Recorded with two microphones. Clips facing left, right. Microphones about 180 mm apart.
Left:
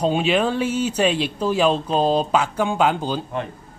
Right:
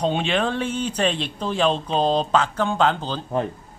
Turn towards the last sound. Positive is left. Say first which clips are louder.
# left 1 dB
turn(degrees=10)  # may be behind; listen again after turning